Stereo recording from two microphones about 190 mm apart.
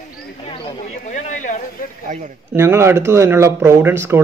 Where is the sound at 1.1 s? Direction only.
40° left (ahead or behind).